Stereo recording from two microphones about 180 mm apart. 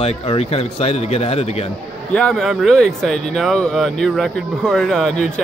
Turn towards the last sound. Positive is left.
turn(degrees=0)  # may be behind; listen again after turning